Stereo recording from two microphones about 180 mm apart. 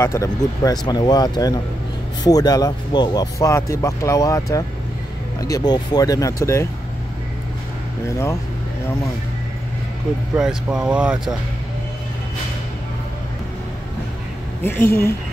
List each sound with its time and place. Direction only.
0.0 s speech: 15° left (ahead or behind)
10.3 s speech: 5° right (ahead or behind)
14.6 s a woman's voice: 10° left (ahead or behind)